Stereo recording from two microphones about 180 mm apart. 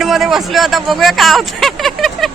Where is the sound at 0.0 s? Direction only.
Centre (ahead or behind).